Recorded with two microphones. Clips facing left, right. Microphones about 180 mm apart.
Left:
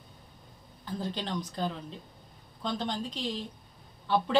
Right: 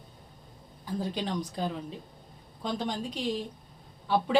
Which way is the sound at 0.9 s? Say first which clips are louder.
Right 2 dB; 10° right (ahead or behind).